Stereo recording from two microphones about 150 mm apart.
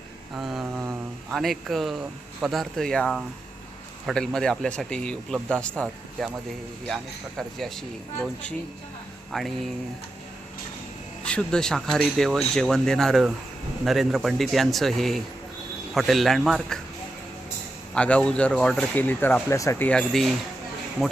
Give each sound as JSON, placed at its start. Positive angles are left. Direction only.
{"t": 0.3, "sound": "mantra", "side_deg": -5}
{"t": 1.3, "sound": "speech", "side_deg": 0}
{"t": 11.2, "sound": "speech", "side_deg": 5}
{"t": 17.9, "sound": "speech", "side_deg": 5}
{"t": 19.9, "sound": "speech", "side_deg": 5}